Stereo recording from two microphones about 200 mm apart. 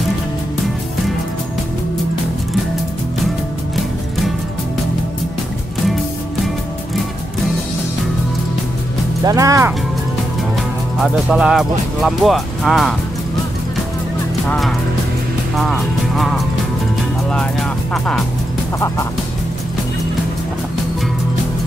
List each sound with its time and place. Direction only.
9.2 s speech: 15° right (ahead or behind)
11.0 s speech: 5° right (ahead or behind)
15.5 s speech: centre (ahead or behind)
17.9 s speech: centre (ahead or behind)